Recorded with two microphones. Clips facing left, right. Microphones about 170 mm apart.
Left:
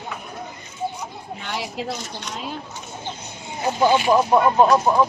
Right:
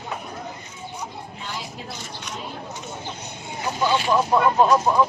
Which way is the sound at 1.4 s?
70° left (ahead or behind).